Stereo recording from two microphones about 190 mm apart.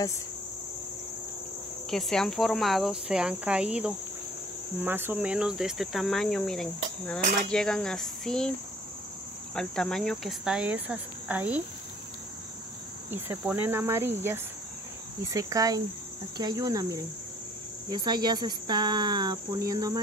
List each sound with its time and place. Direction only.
1.9 s cricket: centre (ahead or behind)
9.6 s cricket: 5° left (ahead or behind)
13.1 s cricket: 10° right (ahead or behind)
15.2 s speech: 20° right (ahead or behind)